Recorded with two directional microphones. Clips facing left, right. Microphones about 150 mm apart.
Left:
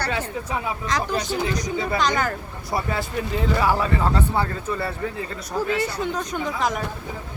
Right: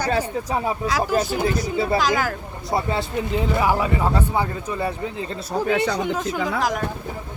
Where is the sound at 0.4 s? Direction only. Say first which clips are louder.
Right 4 dB; 35° right (ahead or behind).